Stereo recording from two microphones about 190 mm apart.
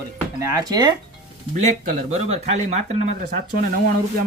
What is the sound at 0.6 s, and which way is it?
Speech, 20° right (ahead or behind).